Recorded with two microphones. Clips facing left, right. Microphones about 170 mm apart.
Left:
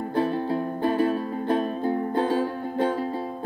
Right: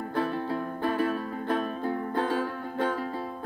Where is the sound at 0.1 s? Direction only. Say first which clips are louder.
Left 5 dB; 25° left (ahead or behind).